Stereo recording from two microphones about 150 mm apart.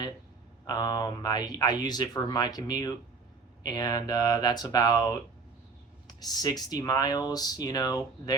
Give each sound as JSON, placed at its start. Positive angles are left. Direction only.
{"t": 0.7, "sound": "speech", "side_deg": 25}